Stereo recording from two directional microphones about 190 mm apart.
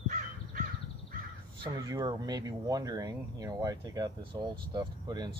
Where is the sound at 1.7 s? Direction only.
20° right (ahead or behind).